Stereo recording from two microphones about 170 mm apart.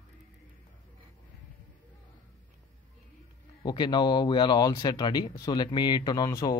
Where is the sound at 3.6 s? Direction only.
25° left (ahead or behind).